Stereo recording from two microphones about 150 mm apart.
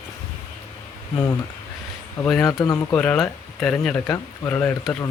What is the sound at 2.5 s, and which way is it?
Speech, 25° left (ahead or behind).